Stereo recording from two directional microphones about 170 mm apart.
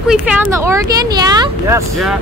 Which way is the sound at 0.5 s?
20° right (ahead or behind).